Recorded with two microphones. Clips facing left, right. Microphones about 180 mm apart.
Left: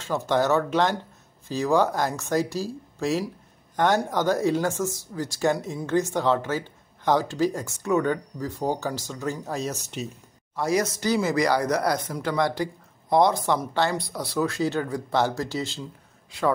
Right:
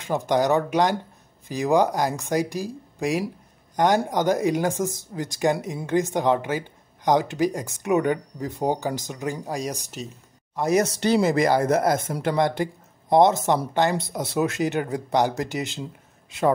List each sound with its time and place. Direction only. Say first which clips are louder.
0.0 s a man's voice: right 2 dB; 15° right (ahead or behind)
10.9 s speech: right 3 dB; 65° right (ahead or behind)
11.4 s speech: right 3 dB; 25° right (ahead or behind)